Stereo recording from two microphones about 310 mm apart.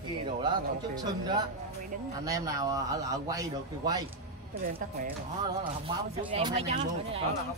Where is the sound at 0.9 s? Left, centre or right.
Centre.